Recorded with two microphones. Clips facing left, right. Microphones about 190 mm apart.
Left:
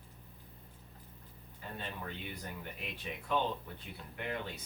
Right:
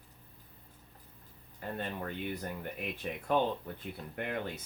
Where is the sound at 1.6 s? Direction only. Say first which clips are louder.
Right 6 dB; 55° right (ahead or behind).